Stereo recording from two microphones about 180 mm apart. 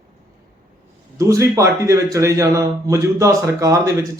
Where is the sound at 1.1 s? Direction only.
15° right (ahead or behind).